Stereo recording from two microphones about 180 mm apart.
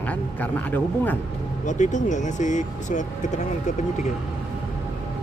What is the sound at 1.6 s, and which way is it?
Speech, 45° left (ahead or behind).